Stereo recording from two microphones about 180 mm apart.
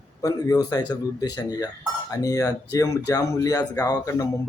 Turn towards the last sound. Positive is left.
turn(degrees=20)  # may be behind; listen again after turning